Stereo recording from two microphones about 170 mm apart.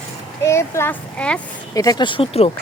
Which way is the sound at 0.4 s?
15° left (ahead or behind).